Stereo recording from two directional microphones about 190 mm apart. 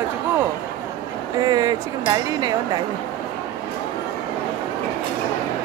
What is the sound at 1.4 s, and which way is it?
Speech, 20° right (ahead or behind).